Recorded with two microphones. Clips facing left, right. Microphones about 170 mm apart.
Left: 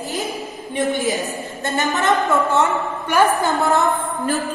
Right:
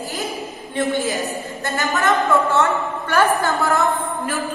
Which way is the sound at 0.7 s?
20° left (ahead or behind).